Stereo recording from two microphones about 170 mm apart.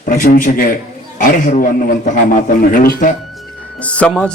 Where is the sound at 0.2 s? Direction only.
55° left (ahead or behind).